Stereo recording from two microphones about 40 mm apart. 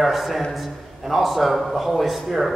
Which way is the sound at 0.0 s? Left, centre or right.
Centre.